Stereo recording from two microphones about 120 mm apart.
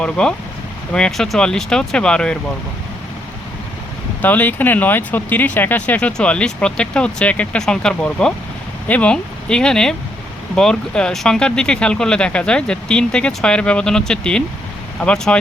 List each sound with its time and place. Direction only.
0.0 s speech: 5° left (ahead or behind)
4.2 s speech: 15° left (ahead or behind)